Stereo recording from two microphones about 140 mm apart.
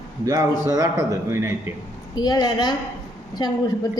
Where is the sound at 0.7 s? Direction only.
25° right (ahead or behind).